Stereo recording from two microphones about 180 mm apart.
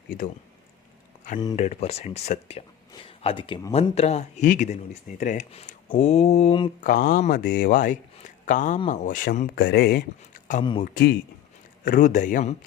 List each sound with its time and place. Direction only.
1.5 s speech: 35° left (ahead or behind)
6.8 s speech: 50° left (ahead or behind)
9.6 s speech: 65° left (ahead or behind)
10.6 s speech: 25° left (ahead or behind)
10.8 s speech: 55° left (ahead or behind)
11.9 s speech: 45° left (ahead or behind)